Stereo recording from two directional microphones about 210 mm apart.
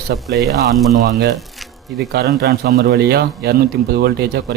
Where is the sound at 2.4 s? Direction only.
50° right (ahead or behind).